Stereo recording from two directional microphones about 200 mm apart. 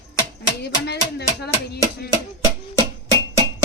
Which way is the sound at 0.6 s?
55° left (ahead or behind).